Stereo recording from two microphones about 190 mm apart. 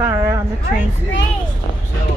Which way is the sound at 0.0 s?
15° right (ahead or behind).